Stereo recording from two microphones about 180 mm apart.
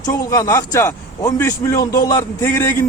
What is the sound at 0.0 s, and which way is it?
A man's voice, 20° left (ahead or behind).